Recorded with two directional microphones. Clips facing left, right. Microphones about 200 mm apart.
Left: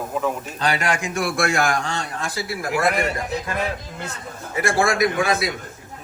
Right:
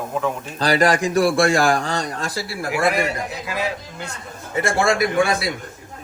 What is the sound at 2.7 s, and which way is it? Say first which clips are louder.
Speech: right 1 dB; centre (ahead or behind).